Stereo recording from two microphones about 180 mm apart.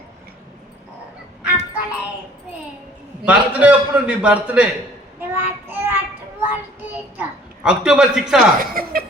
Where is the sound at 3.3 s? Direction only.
5° right (ahead or behind).